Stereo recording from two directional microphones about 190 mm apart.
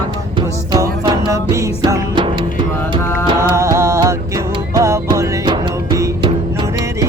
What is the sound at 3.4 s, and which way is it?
Music, 15° right (ahead or behind).